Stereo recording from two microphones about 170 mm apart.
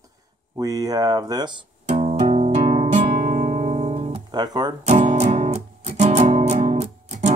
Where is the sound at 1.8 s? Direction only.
45° right (ahead or behind); by 4.7 s 25° right (ahead or behind).